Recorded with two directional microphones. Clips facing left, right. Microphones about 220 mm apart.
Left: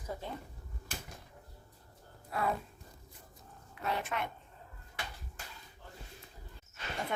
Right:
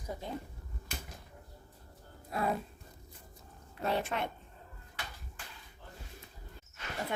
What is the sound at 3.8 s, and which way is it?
Speech, 30° right (ahead or behind).